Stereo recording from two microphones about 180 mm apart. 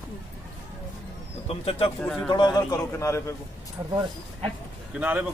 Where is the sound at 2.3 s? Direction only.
25° left (ahead or behind).